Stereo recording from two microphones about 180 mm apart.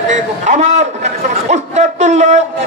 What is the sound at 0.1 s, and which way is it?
A man's voice, 40° right (ahead or behind).